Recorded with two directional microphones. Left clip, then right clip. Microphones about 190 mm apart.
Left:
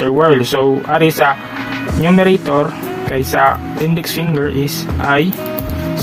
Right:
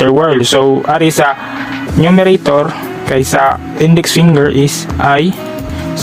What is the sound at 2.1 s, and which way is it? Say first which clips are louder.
Speech: right 3 dB; 45° right (ahead or behind).